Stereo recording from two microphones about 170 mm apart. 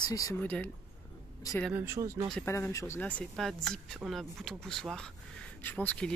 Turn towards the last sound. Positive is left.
turn(degrees=10)  # may be behind; listen again after turning